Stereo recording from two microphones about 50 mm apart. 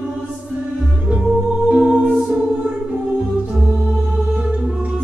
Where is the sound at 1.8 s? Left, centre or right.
Right.